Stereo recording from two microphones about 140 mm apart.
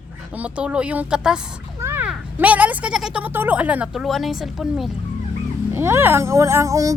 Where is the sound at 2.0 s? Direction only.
10° right (ahead or behind).